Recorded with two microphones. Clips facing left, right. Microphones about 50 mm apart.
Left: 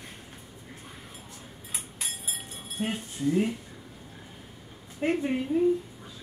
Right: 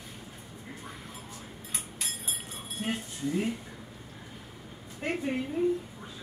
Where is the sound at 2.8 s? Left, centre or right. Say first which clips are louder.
Left 2 dB; left.